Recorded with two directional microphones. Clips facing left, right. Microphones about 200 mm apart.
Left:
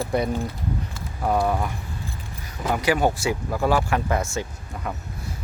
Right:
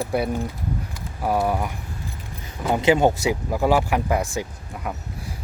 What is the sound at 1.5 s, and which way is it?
Speech, 10° right (ahead or behind).